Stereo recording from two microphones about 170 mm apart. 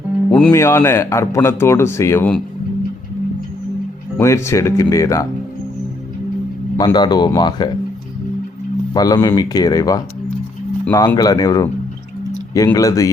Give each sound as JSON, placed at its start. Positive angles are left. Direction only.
{"t": 0.3, "sound": "music", "side_deg": 5}
{"t": 0.5, "sound": "speech", "side_deg": 20}
{"t": 4.2, "sound": "speech", "side_deg": 15}
{"t": 6.7, "sound": "speech", "side_deg": 25}
{"t": 8.9, "sound": "speech", "side_deg": 20}